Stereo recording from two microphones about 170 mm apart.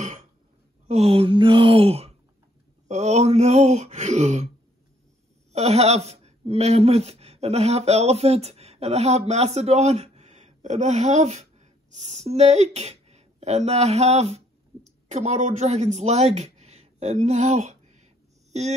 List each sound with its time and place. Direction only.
0.8 s speech: 40° right (ahead or behind)
5.5 s speech: 40° right (ahead or behind)